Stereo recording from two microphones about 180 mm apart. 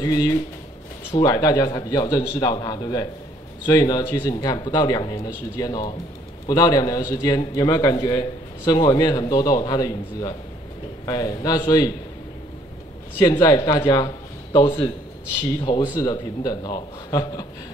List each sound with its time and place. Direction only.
0.0 s a man's voice: 20° left (ahead or behind)
13.2 s a man's voice: 25° left (ahead or behind)